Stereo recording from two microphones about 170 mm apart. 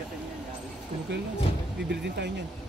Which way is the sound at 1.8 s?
80° right.